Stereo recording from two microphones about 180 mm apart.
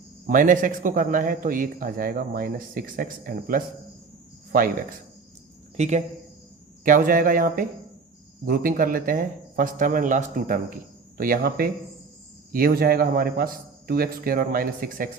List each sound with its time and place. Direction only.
0.3 s speech: 50° right (ahead or behind)
5.7 s speech: 40° right (ahead or behind)
6.8 s a man's voice: 50° right (ahead or behind)